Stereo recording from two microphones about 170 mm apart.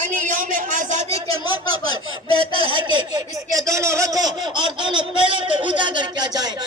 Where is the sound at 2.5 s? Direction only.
30° left (ahead or behind).